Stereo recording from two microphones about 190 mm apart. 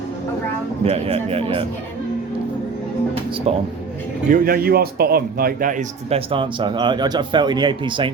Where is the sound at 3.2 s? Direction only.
25° right (ahead or behind).